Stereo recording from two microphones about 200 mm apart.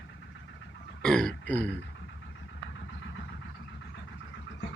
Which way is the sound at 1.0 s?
5° left (ahead or behind).